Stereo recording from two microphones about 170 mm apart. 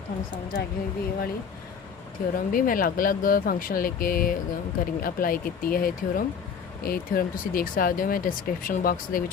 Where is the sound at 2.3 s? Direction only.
55° left (ahead or behind).